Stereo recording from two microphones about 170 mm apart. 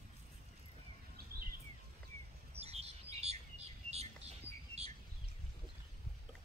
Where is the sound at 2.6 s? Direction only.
35° right (ahead or behind).